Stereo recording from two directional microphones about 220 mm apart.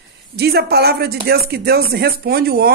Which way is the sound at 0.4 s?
45° right (ahead or behind).